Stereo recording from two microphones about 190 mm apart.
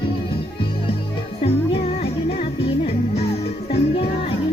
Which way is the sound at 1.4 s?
30° left (ahead or behind).